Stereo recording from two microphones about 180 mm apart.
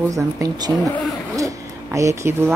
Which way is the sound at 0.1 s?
20° right (ahead or behind).